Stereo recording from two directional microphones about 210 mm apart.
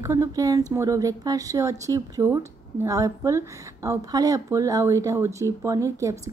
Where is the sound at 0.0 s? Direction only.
15° right (ahead or behind).